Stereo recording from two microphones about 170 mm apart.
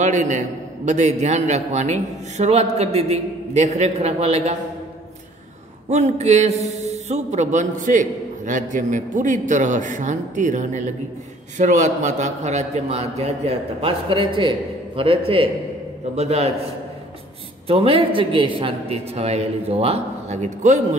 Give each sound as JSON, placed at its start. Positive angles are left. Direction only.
{"t": 0.0, "sound": "a man's voice", "side_deg": -45}
{"t": 5.9, "sound": "a man's voice", "side_deg": -40}
{"t": 17.6, "sound": "a man's voice", "side_deg": -35}